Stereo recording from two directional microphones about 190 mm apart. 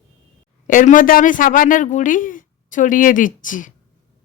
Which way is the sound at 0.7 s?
45° left (ahead or behind).